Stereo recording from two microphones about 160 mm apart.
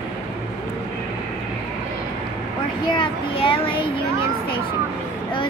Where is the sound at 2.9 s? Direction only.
35° left (ahead or behind).